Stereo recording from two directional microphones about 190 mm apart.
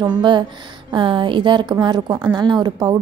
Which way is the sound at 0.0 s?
25° right (ahead or behind).